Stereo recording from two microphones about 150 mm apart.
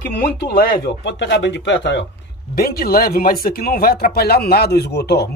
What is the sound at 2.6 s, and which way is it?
Speech, 90° left.